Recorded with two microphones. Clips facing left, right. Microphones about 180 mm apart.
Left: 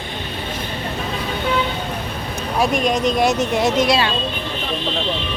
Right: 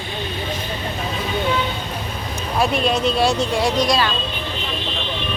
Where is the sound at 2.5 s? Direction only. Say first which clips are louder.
Left 1 dB; 15° left (ahead or behind).